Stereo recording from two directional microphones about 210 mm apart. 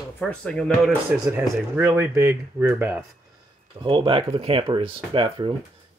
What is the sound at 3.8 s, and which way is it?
Speech, 25° right (ahead or behind).